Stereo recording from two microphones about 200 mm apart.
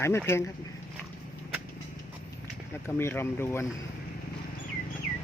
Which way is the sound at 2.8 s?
10° left (ahead or behind).